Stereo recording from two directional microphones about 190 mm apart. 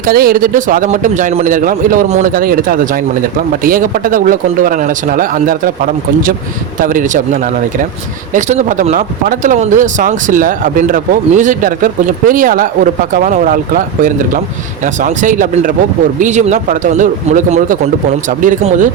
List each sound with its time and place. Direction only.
0.0 s speech: 50° right (ahead or behind)
8.3 s speech: 40° right (ahead or behind)